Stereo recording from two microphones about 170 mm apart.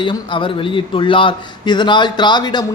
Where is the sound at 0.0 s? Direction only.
30° left (ahead or behind).